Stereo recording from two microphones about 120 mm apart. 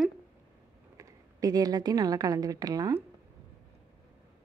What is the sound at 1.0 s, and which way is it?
A woman's voice, 30° right (ahead or behind).